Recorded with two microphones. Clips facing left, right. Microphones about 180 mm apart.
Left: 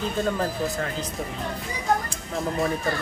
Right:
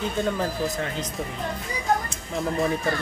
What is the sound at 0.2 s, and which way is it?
Speech, centre (ahead or behind).